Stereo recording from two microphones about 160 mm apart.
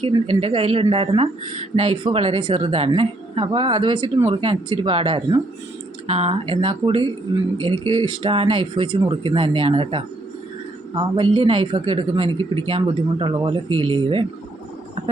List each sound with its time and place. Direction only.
0.0 s speech: 35° right (ahead or behind)